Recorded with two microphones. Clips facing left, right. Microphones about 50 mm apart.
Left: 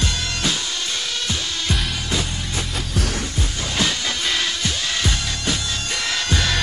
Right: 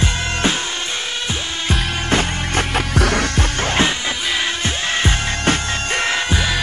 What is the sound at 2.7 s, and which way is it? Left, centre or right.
Music, right.